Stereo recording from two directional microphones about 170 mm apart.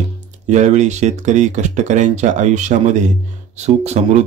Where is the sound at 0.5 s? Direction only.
45° right (ahead or behind).